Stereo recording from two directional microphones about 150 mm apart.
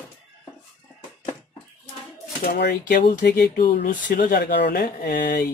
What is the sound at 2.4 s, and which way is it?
Speech, 90° left.